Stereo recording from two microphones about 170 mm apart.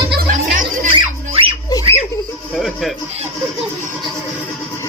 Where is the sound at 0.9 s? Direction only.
35° right (ahead or behind).